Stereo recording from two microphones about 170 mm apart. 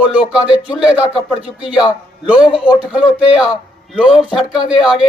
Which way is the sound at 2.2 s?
5° right (ahead or behind).